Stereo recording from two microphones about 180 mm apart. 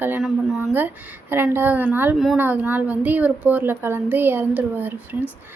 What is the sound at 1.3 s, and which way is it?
Speech, 10° right (ahead or behind).